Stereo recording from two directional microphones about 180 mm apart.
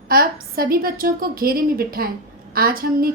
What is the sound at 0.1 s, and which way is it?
A woman's voice, 55° right (ahead or behind).